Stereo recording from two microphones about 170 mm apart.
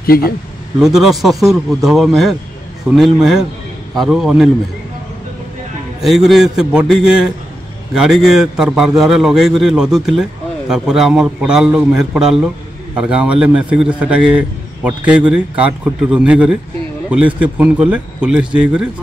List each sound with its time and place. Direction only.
0.0 s speech: 60° left (ahead or behind)
0.7 s a man's voice: centre (ahead or behind)
6.0 s a man's voice: centre (ahead or behind)